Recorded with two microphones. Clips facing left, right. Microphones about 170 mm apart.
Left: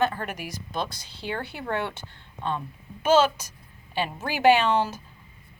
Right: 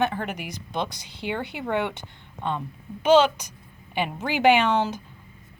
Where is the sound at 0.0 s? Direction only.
15° right (ahead or behind).